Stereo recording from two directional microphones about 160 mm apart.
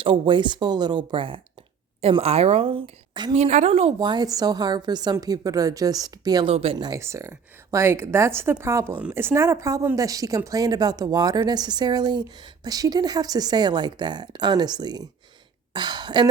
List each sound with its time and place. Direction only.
0.0 s a woman's voice: 30° right (ahead or behind)
3.3 s a woman's voice: 45° right (ahead or behind)
3.9 s speech: 25° right (ahead or behind)
6.5 s speech: 40° right (ahead or behind)